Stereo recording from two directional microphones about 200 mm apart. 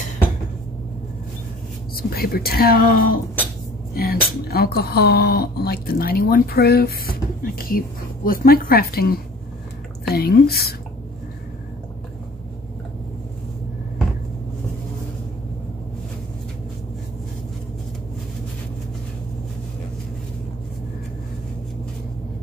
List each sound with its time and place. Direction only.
2.0 s speech: 50° left (ahead or behind)